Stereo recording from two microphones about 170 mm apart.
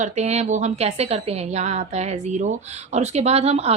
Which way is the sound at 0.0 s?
40° right (ahead or behind).